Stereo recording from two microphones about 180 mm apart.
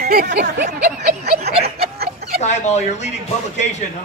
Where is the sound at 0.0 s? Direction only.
60° right (ahead or behind).